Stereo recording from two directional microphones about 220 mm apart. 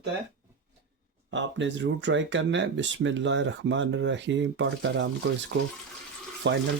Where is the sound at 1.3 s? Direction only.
55° right (ahead or behind).